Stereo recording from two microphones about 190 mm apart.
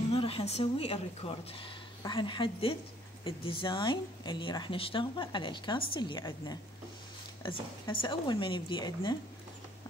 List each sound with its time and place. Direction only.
0.1 s a woman's voice: 30° left (ahead or behind)